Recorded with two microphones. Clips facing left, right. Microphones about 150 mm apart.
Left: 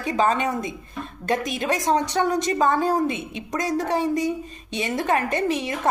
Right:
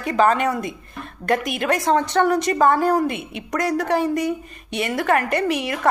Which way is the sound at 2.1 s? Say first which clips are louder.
Right 3 dB; 55° right (ahead or behind).